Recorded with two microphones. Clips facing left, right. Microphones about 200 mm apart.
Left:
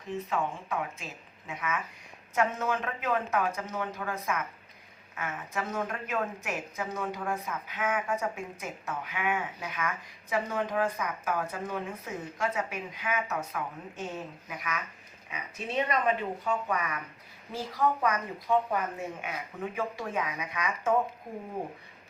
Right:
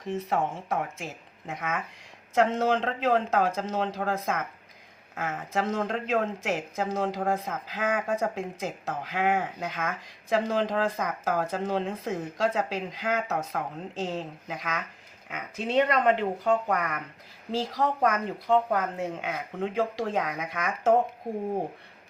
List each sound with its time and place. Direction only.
0.0 s speech: 80° right
2.3 s speech: 90° right
5.1 s speech: 80° right
17.5 s speech: 85° right